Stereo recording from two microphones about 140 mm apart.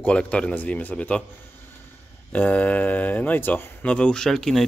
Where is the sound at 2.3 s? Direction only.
10° left (ahead or behind).